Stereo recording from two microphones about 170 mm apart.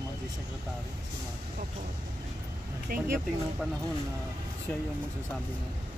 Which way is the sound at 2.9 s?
65° right (ahead or behind).